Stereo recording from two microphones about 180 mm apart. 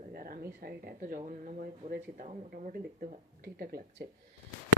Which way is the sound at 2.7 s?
55° right (ahead or behind).